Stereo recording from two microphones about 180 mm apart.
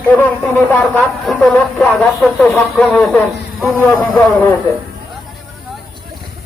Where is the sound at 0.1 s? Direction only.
10° left (ahead or behind).